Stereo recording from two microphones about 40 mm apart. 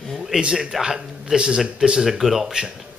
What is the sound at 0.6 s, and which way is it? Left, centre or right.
Speech, centre.